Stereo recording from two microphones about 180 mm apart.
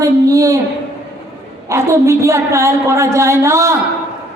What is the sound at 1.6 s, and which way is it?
A woman's voice, 15° right (ahead or behind).